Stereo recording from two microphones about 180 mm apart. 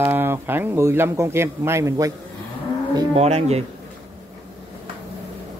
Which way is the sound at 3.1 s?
35° right (ahead or behind).